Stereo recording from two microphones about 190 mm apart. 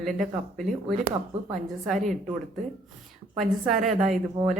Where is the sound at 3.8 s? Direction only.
40° right (ahead or behind).